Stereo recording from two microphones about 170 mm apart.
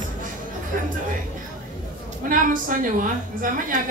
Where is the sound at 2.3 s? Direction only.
55° right (ahead or behind).